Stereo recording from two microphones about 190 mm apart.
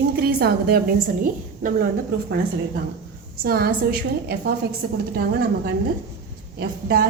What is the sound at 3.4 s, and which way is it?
A woman's voice, 55° right (ahead or behind).